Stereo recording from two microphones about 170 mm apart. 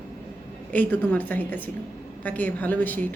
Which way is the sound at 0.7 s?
10° left (ahead or behind).